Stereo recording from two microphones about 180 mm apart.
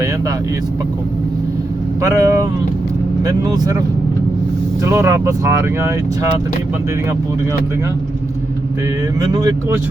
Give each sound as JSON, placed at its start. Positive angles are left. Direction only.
{"t": 2.0, "sound": "speech", "side_deg": -20}
{"t": 4.8, "sound": "speech", "side_deg": -15}
{"t": 9.2, "sound": "speech", "side_deg": -20}